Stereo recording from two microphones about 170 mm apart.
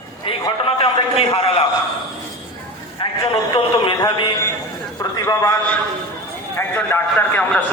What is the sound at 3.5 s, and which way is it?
Speech, 30° left (ahead or behind).